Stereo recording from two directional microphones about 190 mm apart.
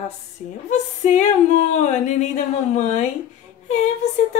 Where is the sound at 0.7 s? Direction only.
40° left (ahead or behind).